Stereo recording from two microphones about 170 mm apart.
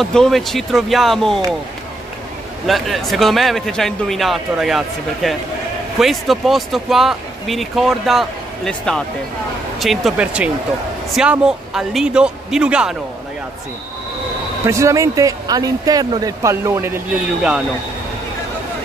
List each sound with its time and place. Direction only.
0.0 s speech: 5° left (ahead or behind)
2.6 s speech: centre (ahead or behind)
14.7 s speech: 15° right (ahead or behind)